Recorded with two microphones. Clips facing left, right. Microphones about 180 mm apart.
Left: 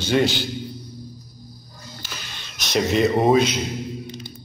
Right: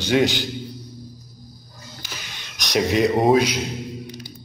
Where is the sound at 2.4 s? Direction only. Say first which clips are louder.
Right 1 dB; 10° right (ahead or behind).